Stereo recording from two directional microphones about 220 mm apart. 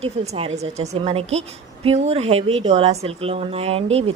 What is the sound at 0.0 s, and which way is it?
A woman's voice, 25° right (ahead or behind).